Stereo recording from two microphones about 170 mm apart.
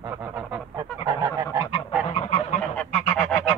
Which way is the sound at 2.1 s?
40° left (ahead or behind).